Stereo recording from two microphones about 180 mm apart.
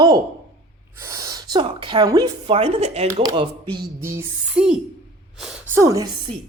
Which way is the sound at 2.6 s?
35° right (ahead or behind).